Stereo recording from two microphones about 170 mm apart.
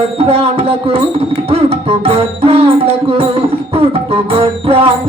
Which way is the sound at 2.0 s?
35° right (ahead or behind).